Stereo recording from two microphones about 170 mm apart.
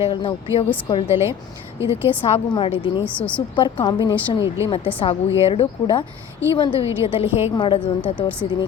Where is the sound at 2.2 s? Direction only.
30° left (ahead or behind).